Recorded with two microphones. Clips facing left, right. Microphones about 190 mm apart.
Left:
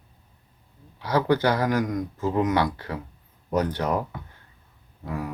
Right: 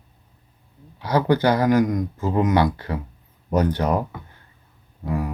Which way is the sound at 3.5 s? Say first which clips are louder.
Right 4 dB; 20° right (ahead or behind).